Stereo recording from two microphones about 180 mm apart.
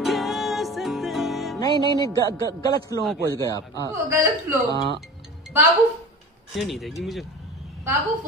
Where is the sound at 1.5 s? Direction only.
25° left (ahead or behind).